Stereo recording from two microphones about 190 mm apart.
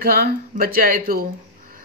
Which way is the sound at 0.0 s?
50° right (ahead or behind).